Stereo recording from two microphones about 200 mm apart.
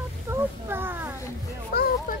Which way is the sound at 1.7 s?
50° left (ahead or behind).